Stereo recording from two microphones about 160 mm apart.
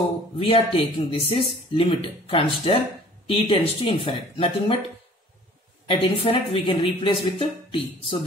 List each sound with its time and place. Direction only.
0.4 s speech: 35° left (ahead or behind)
5.9 s speech: 35° left (ahead or behind)